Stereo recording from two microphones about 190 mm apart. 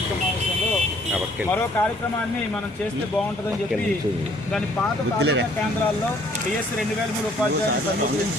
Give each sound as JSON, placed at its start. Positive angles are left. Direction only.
{"t": 5.2, "sound": "speech", "side_deg": -65}